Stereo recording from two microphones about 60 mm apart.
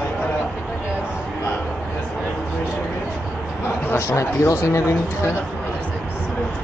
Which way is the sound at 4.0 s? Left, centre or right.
Left.